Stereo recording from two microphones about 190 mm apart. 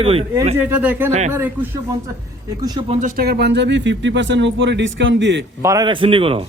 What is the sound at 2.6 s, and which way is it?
Speech, 20° right (ahead or behind).